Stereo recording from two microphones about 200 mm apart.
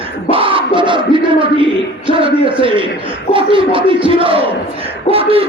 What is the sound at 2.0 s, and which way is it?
Speech, 25° right (ahead or behind).